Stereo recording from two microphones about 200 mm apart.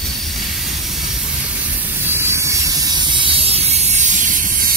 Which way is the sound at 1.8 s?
10° right (ahead or behind).